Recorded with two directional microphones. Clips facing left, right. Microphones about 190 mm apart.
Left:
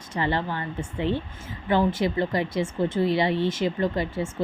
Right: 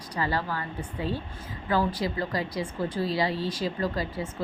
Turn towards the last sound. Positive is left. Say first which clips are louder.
# left 4 dB
turn(degrees=25)  # may be behind; listen again after turning